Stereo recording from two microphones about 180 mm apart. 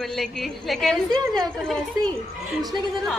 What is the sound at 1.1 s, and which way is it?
Speech, 20° right (ahead or behind).